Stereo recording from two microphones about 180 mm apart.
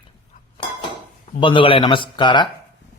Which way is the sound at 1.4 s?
25° left (ahead or behind).